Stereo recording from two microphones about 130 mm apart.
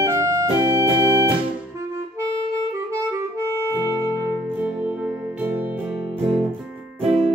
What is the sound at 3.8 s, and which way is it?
Music, 30° left (ahead or behind).